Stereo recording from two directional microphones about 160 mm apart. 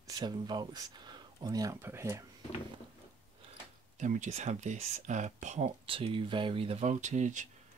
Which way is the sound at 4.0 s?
50° right (ahead or behind).